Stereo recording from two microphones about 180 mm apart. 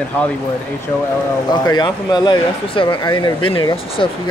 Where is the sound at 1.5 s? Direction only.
25° left (ahead or behind).